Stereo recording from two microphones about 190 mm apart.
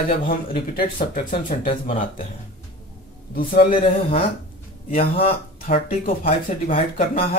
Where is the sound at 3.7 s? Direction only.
30° left (ahead or behind).